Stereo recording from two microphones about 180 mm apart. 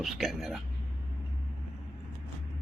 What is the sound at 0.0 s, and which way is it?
Speech, centre (ahead or behind).